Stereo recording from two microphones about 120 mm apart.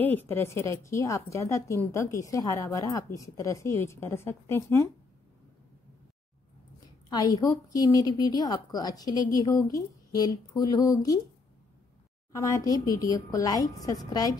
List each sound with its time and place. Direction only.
0.0 s a woman's voice: 15° left (ahead or behind)
7.1 s a woman's voice: 35° left (ahead or behind)
12.6 s a woman's voice: 30° left (ahead or behind)